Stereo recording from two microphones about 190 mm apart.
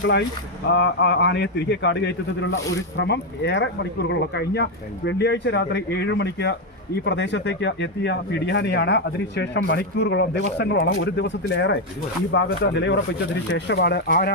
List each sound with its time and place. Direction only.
0.0 s speech: 65° left (ahead or behind)